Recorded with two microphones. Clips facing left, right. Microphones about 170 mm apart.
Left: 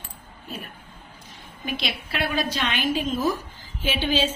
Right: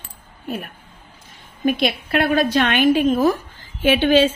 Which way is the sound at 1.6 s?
50° right (ahead or behind).